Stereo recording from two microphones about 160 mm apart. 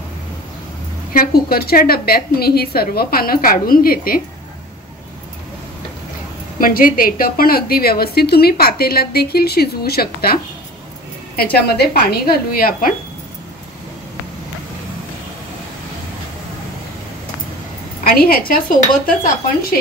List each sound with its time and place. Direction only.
1.1 s a woman's voice: 65° left (ahead or behind)
6.6 s a woman's voice: 60° left (ahead or behind)
11.5 s a woman's voice: 80° left; by 12.9 s 65° left (ahead or behind)
18.0 s a woman's voice: 70° left (ahead or behind)
18.5 s dishes: 60° left (ahead or behind)